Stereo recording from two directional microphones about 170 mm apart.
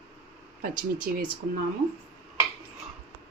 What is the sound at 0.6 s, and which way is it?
Speech, 55° right (ahead or behind).